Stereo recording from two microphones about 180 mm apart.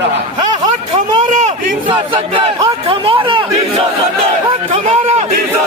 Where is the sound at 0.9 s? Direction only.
40° right (ahead or behind).